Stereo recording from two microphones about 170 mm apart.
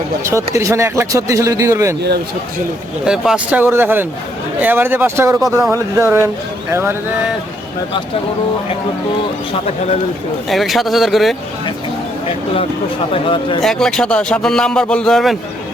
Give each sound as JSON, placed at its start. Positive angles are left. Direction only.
{"t": 0.5, "sound": "speech", "side_deg": -15}
{"t": 3.1, "sound": "speech", "side_deg": -5}
{"t": 10.5, "sound": "speech", "side_deg": 0}
{"t": 13.1, "sound": "speech", "side_deg": 30}
{"t": 13.6, "sound": "speech", "side_deg": 5}